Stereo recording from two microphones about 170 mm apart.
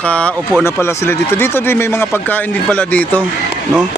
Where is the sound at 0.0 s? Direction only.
10° left (ahead or behind).